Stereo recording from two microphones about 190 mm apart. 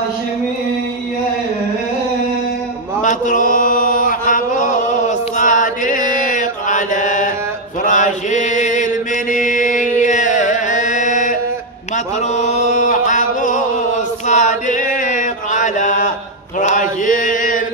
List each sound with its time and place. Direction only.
3.0 s chant: 40° left (ahead or behind)
9.3 s music: 45° left (ahead or behind)
12.4 s chant: 40° left (ahead or behind)